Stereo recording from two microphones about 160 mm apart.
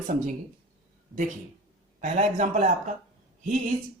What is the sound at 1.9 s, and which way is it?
Speech, 50° right (ahead or behind).